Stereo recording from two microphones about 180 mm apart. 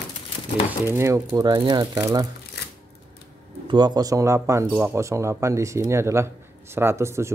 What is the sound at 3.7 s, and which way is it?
Speech, 25° right (ahead or behind).